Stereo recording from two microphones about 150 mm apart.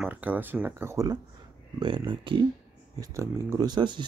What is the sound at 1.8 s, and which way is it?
Speech, 30° right (ahead or behind).